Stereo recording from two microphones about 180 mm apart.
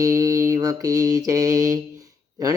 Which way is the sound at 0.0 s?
20° right (ahead or behind).